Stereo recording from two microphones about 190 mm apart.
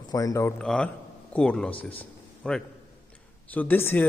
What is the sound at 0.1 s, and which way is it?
A man's voice, 20° left (ahead or behind).